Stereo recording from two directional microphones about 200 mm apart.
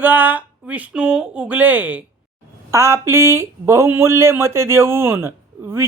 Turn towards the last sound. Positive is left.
turn(degrees=-10)  # may be behind; listen again after turning